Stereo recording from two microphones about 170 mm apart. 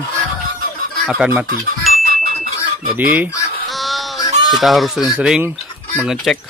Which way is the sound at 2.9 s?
10° right (ahead or behind).